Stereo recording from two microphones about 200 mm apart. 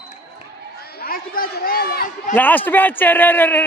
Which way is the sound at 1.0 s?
50° left (ahead or behind).